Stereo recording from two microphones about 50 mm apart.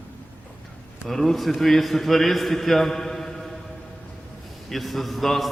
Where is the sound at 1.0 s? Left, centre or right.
Centre.